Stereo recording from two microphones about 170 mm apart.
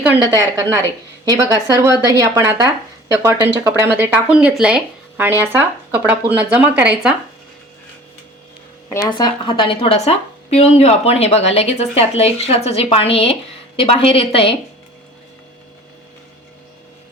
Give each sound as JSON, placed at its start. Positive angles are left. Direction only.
{"t": 0.2, "sound": "a woman's voice", "side_deg": -25}
{"t": 9.0, "sound": "a woman's voice", "side_deg": 25}